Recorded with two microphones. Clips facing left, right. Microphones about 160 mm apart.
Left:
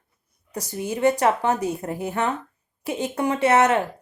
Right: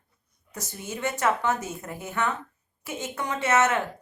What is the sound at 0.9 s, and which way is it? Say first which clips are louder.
A woman's voice: left 7 dB; 35° left (ahead or behind).